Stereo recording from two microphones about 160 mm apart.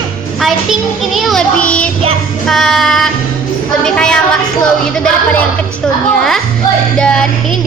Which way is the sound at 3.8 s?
5° left (ahead or behind).